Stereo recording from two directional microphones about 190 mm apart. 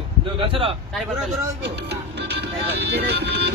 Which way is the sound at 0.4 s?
30° right (ahead or behind).